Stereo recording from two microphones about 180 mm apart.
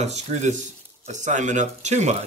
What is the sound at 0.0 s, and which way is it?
Speech, 40° right (ahead or behind).